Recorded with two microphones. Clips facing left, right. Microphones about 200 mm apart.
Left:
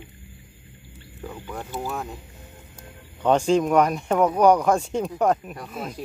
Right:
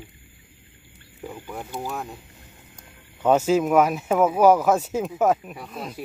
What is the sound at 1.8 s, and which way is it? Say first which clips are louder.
Speech: left 1 dB; centre (ahead or behind).